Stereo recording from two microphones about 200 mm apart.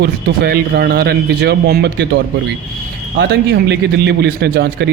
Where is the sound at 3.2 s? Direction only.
60° right (ahead or behind).